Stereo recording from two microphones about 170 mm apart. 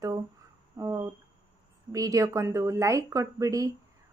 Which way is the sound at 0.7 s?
20° right (ahead or behind).